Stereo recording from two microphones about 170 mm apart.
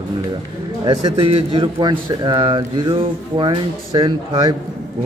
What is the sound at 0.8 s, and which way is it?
A man's voice, 30° right (ahead or behind).